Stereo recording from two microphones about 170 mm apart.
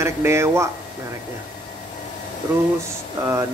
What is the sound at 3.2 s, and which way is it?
Speech, 15° right (ahead or behind).